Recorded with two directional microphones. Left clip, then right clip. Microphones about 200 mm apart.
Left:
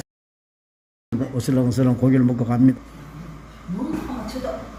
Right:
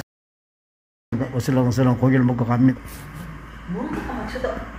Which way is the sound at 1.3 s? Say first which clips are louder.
Right 1 dB; 5° left (ahead or behind).